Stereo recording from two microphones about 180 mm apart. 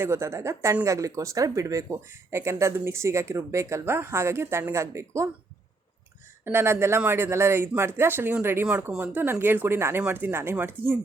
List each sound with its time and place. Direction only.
0.0 s speech: 15° right (ahead or behind)
6.4 s speech: 15° right (ahead or behind)